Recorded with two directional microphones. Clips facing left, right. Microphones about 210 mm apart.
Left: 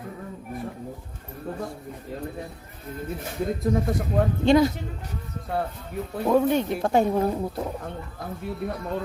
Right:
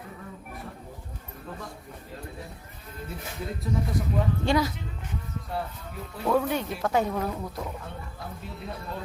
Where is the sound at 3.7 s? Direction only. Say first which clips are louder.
Left 5 dB; 50° left (ahead or behind).